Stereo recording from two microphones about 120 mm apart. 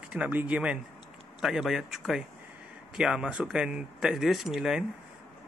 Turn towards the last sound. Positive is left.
turn(degrees=-5)  # may be behind; listen again after turning